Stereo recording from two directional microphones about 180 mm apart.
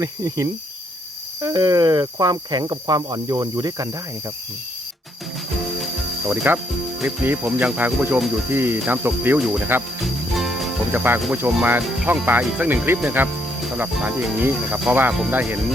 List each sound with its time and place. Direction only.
0.0 s speech: 20° right (ahead or behind)
5.8 s music: 5° right (ahead or behind)
7.0 s speech: 10° right (ahead or behind)
10.0 s music: centre (ahead or behind)
10.9 s speech: 10° right (ahead or behind)